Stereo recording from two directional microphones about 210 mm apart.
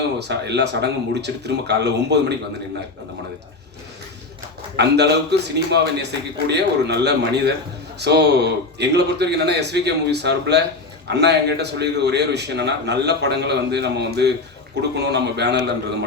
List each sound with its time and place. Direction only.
0.2 s a man's voice: 55° right (ahead or behind)
4.8 s a man's voice: 50° right (ahead or behind)